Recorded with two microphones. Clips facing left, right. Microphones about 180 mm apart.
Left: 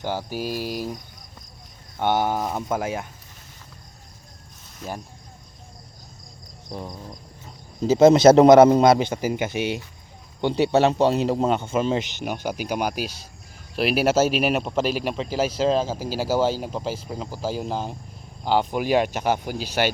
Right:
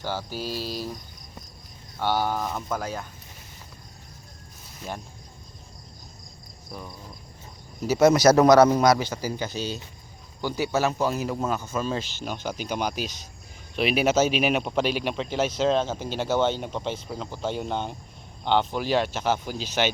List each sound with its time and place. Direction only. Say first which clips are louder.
0.0 s speech: left 3 dB; 15° left (ahead or behind)
2.0 s a man's voice: left 3 dB; 20° left (ahead or behind)
7.8 s a man's voice: left 5 dB; 25° left (ahead or behind); by 19.9 s 10° left (ahead or behind)